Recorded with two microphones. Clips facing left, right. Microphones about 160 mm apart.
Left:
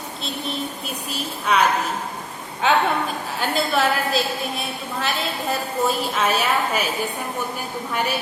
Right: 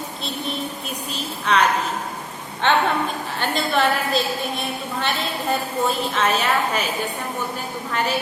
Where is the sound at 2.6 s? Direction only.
10° left (ahead or behind).